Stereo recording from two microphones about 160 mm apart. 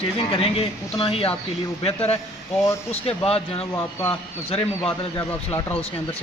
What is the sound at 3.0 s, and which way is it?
Speech, 35° left (ahead or behind).